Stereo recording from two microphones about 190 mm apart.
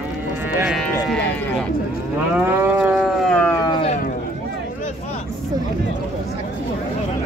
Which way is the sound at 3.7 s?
30° left (ahead or behind).